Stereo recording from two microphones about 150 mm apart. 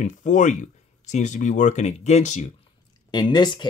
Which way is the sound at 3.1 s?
30° left (ahead or behind).